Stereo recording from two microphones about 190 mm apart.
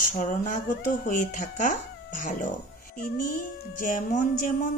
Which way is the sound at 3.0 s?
45° left (ahead or behind).